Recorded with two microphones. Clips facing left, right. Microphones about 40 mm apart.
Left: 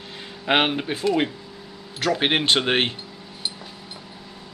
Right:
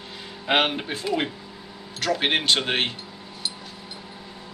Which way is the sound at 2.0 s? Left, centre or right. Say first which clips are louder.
Left 2 dB; centre.